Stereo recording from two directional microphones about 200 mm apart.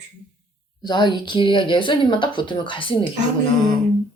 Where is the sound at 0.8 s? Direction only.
20° left (ahead or behind).